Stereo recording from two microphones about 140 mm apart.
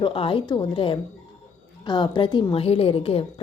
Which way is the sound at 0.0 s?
40° left (ahead or behind).